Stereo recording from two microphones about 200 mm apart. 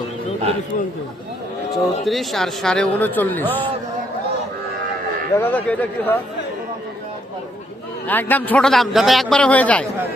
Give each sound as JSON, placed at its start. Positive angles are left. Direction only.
{"t": 1.7, "sound": "speech", "side_deg": 0}
{"t": 5.4, "sound": "a man's voice", "side_deg": 10}
{"t": 8.0, "sound": "a man's voice", "side_deg": 10}